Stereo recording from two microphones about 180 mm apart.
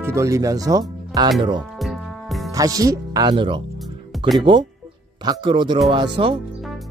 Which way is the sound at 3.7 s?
Centre (ahead or behind).